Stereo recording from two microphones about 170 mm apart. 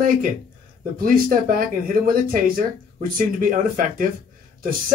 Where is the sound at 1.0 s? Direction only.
55° right (ahead or behind).